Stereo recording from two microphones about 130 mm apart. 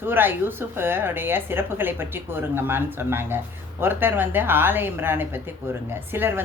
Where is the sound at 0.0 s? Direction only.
15° right (ahead or behind).